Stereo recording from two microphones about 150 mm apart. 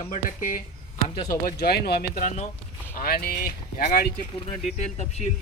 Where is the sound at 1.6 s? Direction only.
90° left; by 2.5 s 55° left (ahead or behind).